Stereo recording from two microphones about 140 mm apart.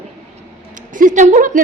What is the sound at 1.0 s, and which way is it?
Speech, 65° right (ahead or behind).